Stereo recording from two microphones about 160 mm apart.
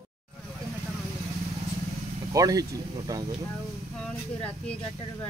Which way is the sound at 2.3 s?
20° right (ahead or behind).